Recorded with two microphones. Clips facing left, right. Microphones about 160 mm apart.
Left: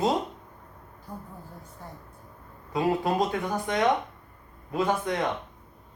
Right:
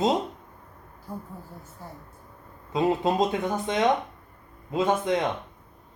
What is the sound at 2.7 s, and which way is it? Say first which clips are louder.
Speech: right 2 dB; 20° right (ahead or behind).